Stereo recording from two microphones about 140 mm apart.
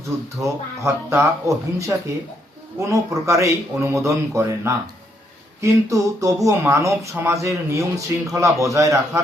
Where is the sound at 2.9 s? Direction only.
20° right (ahead or behind).